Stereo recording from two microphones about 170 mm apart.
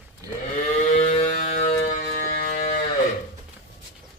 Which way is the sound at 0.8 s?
40° left (ahead or behind).